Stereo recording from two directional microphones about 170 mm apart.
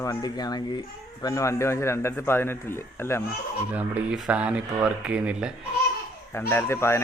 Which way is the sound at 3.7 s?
10° right (ahead or behind).